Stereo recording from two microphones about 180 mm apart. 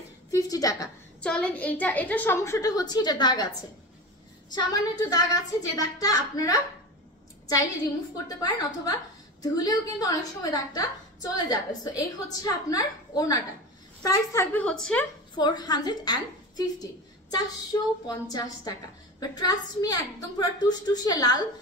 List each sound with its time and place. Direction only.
0.3 s a woman's voice: 20° left (ahead or behind)
1.2 s a woman's voice: 5° left (ahead or behind); by 3.4 s 25° left (ahead or behind)
4.5 s a woman's voice: 20° left (ahead or behind)
8.3 s a woman's voice: 20° left (ahead or behind); by 15.0 s 5° left (ahead or behind)
15.3 s a woman's voice: 25° left (ahead or behind)
17.7 s a woman's voice: 15° left (ahead or behind)